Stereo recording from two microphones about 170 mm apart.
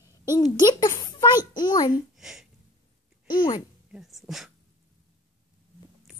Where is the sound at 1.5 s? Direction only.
25° left (ahead or behind).